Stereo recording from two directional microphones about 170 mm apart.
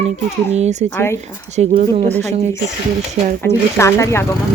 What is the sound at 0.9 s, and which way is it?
Speech, 15° left (ahead or behind).